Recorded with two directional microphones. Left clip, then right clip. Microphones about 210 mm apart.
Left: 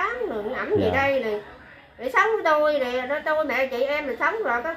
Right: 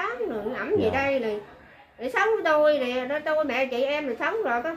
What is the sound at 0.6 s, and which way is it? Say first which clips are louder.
Speech: left 2 dB; 5° left (ahead or behind).